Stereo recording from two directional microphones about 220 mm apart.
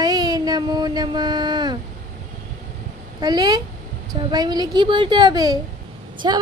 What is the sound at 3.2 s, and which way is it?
Child singing, 20° right (ahead or behind).